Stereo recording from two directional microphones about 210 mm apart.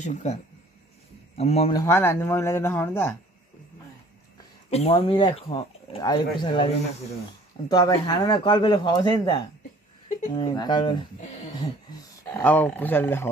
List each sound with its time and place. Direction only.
0.0 s speech: 35° left (ahead or behind)
1.8 s speech: 10° left (ahead or behind)
4.6 s speech: 30° left (ahead or behind)
12.4 s speech: 10° left (ahead or behind)